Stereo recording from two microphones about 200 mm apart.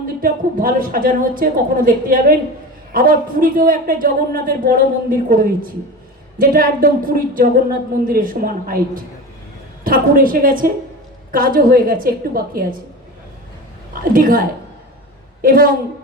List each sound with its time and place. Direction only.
0.2 s a man's voice: 45° right (ahead or behind)
9.8 s a man's voice: 45° right (ahead or behind)
13.9 s a man's voice: 45° right (ahead or behind)